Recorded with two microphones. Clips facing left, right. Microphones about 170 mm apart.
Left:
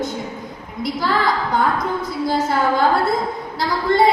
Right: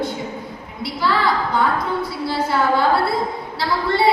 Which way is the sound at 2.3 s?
45° left (ahead or behind).